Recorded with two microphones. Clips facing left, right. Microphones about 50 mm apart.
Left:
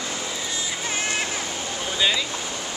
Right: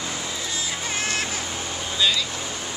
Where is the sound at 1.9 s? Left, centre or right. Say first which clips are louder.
Even; left.